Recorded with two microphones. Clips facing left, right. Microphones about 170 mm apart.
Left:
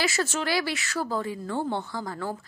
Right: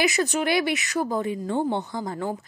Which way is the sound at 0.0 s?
15° right (ahead or behind).